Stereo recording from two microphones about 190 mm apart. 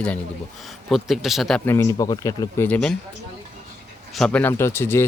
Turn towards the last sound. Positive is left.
turn(degrees=10)  # may be behind; listen again after turning